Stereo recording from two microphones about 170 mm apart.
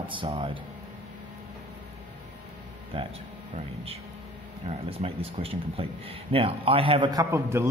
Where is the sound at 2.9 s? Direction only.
30° right (ahead or behind).